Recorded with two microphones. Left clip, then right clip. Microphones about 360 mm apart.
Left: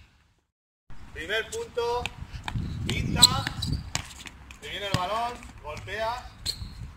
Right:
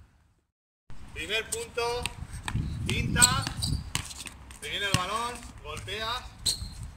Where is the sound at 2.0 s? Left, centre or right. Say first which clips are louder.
Left 2 dB; centre.